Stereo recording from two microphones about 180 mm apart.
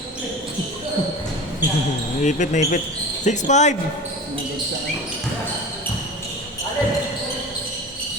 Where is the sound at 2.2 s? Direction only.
45° left (ahead or behind).